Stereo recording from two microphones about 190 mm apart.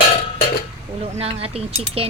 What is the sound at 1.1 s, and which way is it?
Speech, 30° right (ahead or behind).